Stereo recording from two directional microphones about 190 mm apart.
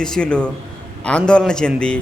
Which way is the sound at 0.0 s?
5° left (ahead or behind).